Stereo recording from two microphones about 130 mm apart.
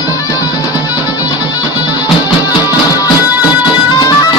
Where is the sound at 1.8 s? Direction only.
30° left (ahead or behind).